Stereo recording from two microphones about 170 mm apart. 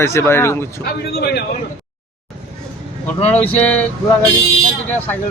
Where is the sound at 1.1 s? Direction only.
65° left (ahead or behind).